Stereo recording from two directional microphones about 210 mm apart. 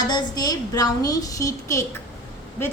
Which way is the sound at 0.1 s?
15° left (ahead or behind).